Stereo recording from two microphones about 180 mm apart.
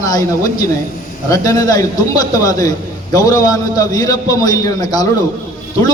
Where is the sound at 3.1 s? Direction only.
20° left (ahead or behind).